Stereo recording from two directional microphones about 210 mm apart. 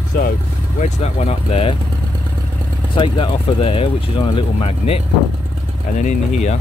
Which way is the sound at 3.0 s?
25° left (ahead or behind).